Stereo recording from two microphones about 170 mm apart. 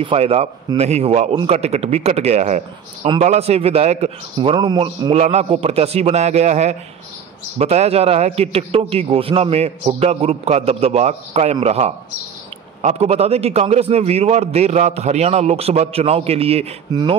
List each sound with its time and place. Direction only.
0.0 s a man's voice: 35° right (ahead or behind)
5.2 s a man's voice: 40° right (ahead or behind)